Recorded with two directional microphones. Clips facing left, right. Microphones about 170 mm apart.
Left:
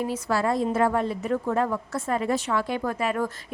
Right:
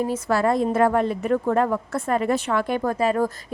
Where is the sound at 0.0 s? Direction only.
50° right (ahead or behind).